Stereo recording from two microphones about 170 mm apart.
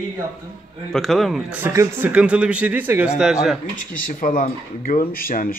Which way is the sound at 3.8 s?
55° left (ahead or behind).